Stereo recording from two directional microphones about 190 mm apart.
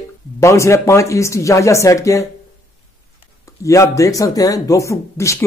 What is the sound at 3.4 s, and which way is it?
Speech, 15° left (ahead or behind).